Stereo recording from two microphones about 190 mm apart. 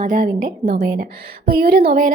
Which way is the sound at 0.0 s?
45° right (ahead or behind).